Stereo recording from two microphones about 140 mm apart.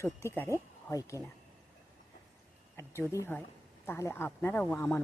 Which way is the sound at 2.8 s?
20° left (ahead or behind).